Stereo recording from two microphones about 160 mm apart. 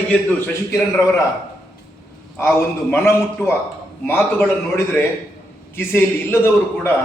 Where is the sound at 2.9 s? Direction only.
15° left (ahead or behind).